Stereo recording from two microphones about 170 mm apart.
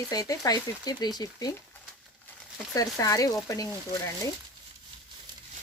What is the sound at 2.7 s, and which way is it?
Speech, 20° left (ahead or behind).